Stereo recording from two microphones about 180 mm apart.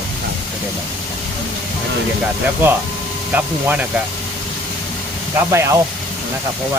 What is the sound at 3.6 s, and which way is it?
Speech, 10° right (ahead or behind).